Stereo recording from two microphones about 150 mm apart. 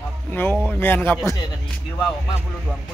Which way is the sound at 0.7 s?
10° left (ahead or behind).